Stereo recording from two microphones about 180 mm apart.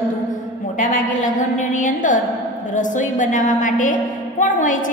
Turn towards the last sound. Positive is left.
turn(degrees=45)  # may be behind; listen again after turning